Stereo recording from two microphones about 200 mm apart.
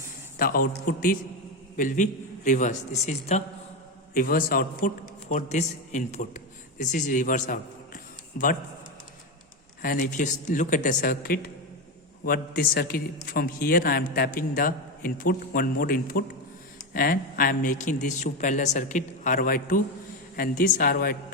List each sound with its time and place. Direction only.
0.3 s a man's voice: 45° left (ahead or behind)
4.1 s a man's voice: 45° left (ahead or behind)
5.3 s a man's voice: 35° left (ahead or behind)
9.8 s a man's voice: 40° left (ahead or behind)